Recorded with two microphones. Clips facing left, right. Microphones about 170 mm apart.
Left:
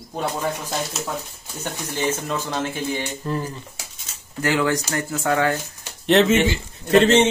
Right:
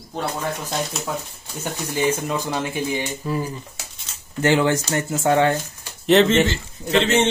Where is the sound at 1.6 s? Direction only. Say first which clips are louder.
Right 3 dB; 10° right (ahead or behind).